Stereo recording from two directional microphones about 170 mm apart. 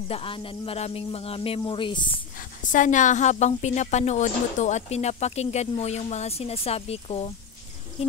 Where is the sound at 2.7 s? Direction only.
50° left (ahead or behind).